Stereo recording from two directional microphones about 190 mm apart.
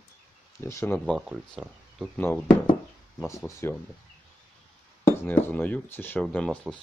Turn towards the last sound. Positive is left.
turn(degrees=5)  # may be behind; listen again after turning